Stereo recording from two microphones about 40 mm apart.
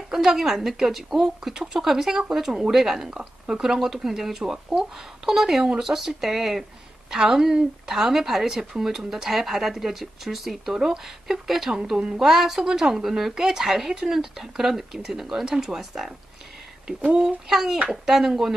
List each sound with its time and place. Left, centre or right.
0.1 s a woman's voice: centre
3.1 s a woman's voice: centre
17.0 s a child's voice: right
17.5 s speech: centre